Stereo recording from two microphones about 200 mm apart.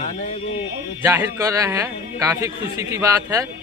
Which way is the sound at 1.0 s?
10° right (ahead or behind).